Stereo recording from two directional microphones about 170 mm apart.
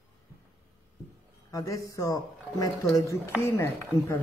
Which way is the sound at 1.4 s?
20° left (ahead or behind).